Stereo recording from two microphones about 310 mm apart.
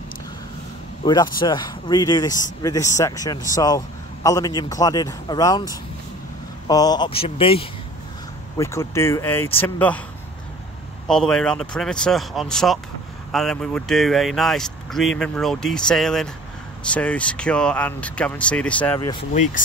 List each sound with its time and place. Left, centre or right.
1.0 s speech: centre
11.1 s speech: centre